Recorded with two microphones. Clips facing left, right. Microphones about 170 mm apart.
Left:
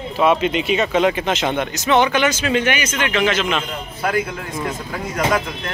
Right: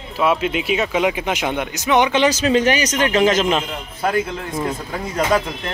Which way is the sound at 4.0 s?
25° right (ahead or behind).